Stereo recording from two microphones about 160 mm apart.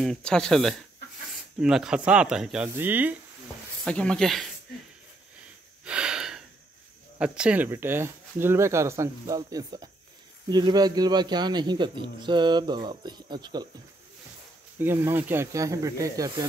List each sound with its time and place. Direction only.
0.0 s speech: 5° left (ahead or behind)
3.8 s speech: 5° left (ahead or behind)
5.9 s gasp: 5° right (ahead or behind)
7.2 s speech: 5° right (ahead or behind); by 13.7 s 25° right (ahead or behind)
14.8 s speech: 15° right (ahead or behind)